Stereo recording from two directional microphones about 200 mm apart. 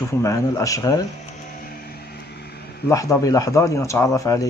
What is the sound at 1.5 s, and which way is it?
Vehicle, 50° left (ahead or behind).